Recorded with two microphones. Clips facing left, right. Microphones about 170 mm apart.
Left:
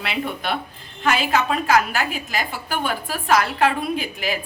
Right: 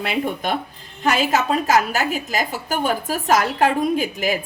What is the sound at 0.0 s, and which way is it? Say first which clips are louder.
A woman's voice: right 3 dB; 45° right (ahead or behind).